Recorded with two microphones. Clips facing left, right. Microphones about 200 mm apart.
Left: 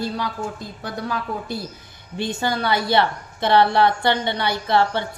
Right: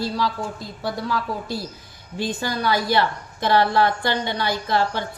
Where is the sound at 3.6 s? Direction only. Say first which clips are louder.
Left 3 dB; 60° left (ahead or behind).